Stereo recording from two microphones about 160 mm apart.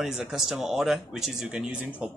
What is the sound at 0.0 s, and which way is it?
Speech, 5° right (ahead or behind).